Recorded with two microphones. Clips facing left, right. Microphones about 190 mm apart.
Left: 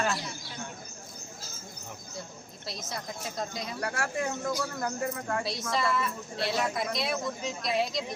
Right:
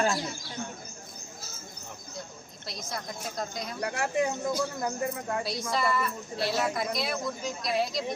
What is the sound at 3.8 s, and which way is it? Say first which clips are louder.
Speech: right 4 dB; 20° right (ahead or behind).